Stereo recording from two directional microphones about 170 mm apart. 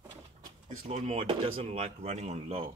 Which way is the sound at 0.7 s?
45° right (ahead or behind).